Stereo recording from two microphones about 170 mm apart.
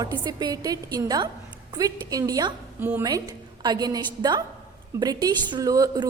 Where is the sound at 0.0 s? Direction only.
25° right (ahead or behind).